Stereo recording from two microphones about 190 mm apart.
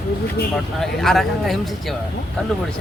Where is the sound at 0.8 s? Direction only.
Centre (ahead or behind).